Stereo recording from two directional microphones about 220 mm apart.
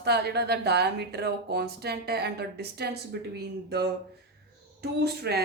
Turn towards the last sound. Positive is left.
turn(degrees=-45)  # may be behind; listen again after turning